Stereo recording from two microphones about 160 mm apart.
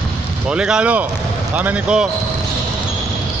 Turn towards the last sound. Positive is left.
turn(degrees=-10)  # may be behind; listen again after turning